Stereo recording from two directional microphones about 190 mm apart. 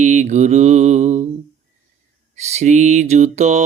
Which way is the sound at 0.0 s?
40° right (ahead or behind).